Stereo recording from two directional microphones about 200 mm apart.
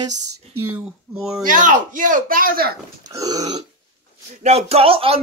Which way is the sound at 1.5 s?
40° right (ahead or behind).